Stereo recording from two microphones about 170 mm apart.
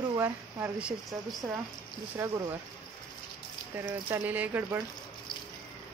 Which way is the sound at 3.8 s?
15° right (ahead or behind).